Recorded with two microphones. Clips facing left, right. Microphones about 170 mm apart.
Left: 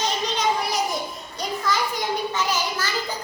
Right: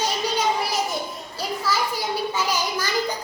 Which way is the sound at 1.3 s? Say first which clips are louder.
Even; 5° right (ahead or behind).